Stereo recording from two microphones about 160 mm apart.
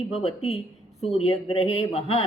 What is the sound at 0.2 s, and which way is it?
A woman's voice, 40° left (ahead or behind).